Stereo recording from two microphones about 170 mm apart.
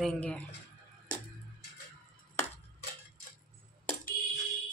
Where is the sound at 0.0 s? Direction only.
5° left (ahead or behind).